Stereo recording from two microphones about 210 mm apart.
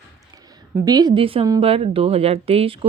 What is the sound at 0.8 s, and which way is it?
Speech, 20° right (ahead or behind).